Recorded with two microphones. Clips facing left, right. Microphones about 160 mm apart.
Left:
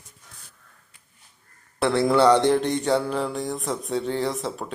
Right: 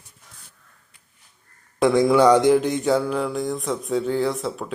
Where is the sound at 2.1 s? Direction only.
10° right (ahead or behind).